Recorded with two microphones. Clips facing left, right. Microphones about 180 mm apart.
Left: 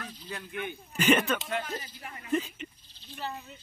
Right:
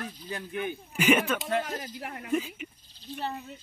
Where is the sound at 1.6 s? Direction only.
65° right (ahead or behind).